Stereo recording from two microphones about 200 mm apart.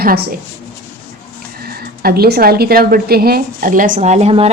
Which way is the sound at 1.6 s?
50° right (ahead or behind).